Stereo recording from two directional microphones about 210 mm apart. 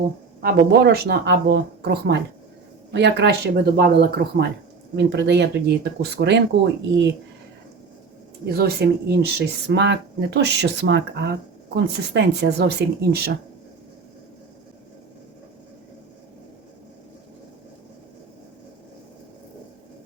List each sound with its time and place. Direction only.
0.4 s speech: 50° right (ahead or behind)
8.4 s speech: 50° right (ahead or behind)